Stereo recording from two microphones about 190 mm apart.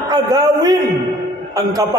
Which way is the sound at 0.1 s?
20° right (ahead or behind).